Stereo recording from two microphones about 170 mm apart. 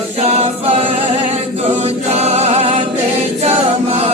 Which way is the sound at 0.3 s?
35° right (ahead or behind).